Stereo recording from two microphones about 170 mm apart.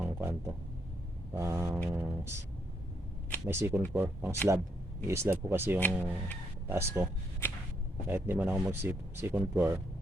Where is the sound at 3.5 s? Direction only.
15° right (ahead or behind).